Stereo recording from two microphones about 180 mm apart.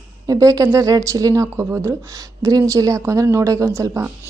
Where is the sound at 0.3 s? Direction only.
20° right (ahead or behind).